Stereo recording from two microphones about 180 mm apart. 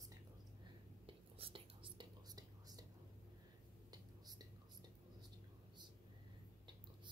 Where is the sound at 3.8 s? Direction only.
20° right (ahead or behind).